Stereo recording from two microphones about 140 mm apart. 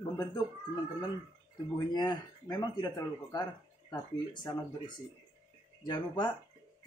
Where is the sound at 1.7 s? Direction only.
30° left (ahead or behind).